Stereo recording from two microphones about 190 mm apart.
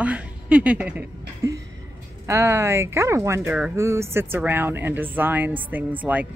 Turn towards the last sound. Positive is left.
turn(degrees=-10)  # may be behind; listen again after turning